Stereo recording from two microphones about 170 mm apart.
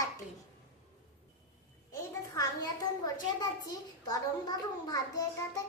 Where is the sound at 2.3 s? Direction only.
20° left (ahead or behind).